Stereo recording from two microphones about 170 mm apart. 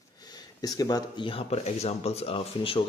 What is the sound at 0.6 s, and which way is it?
Speech, 20° left (ahead or behind).